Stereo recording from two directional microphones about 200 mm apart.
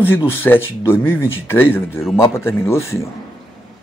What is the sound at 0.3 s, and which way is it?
Speech, 10° left (ahead or behind).